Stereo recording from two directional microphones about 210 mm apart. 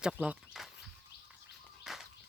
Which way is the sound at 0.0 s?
5° right (ahead or behind).